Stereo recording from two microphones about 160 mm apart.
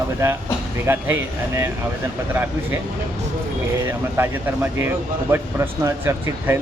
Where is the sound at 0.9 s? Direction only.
15° right (ahead or behind).